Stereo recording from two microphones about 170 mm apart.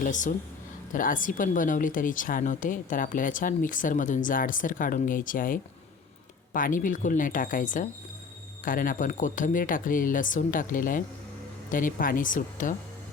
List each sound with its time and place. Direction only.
0.0 s speech: 50° left (ahead or behind)